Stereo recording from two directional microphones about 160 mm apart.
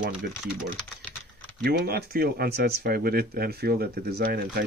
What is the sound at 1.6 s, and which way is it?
Speech, 80° right.